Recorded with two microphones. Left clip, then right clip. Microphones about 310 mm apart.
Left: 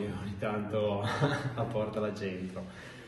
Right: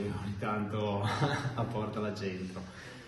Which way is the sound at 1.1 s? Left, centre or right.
Centre.